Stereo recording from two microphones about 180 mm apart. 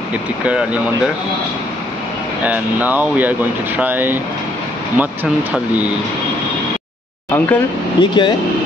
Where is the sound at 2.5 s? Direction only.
10° right (ahead or behind).